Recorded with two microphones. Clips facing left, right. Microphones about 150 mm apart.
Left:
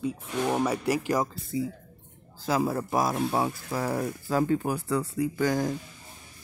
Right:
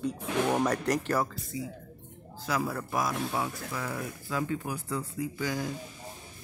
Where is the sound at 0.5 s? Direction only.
10° left (ahead or behind).